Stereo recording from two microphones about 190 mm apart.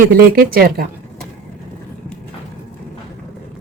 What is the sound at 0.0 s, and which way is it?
Speech, 50° right (ahead or behind).